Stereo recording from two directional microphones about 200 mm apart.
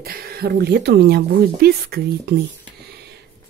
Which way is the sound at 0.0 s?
50° right (ahead or behind).